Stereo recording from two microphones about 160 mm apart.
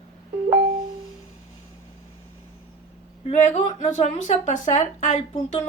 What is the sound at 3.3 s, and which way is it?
Speech, 45° left (ahead or behind).